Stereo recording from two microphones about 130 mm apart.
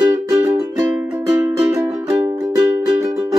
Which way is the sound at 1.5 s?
25° right (ahead or behind).